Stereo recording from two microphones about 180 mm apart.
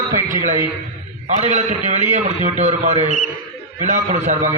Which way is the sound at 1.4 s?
40° right (ahead or behind).